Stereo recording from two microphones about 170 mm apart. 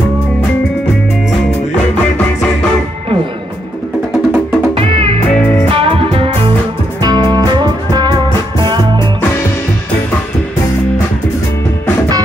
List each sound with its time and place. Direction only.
4.7 s music: 30° right (ahead or behind)